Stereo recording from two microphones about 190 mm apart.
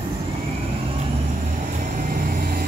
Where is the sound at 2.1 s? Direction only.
50° right (ahead or behind).